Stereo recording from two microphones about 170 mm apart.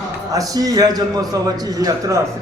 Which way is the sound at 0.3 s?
20° right (ahead or behind).